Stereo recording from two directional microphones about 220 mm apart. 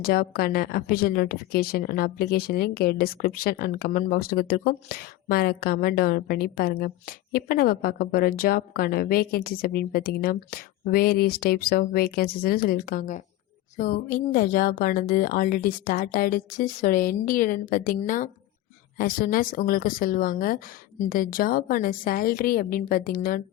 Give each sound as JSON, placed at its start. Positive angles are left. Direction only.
{"t": 0.0, "sound": "a woman's voice", "side_deg": 45}